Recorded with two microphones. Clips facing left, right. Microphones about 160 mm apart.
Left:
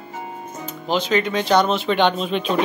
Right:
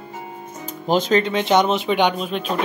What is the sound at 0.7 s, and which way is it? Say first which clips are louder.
Speech: right 3 dB; 45° right (ahead or behind).